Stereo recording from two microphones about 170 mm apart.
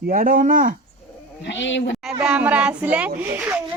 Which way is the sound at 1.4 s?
90° left.